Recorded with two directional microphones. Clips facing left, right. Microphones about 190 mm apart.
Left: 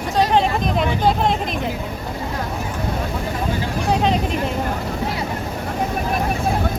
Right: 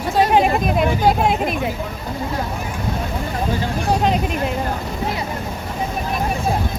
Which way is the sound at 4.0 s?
5° right (ahead or behind).